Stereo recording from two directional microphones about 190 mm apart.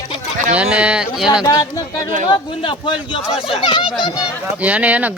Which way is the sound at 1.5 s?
20° left (ahead or behind).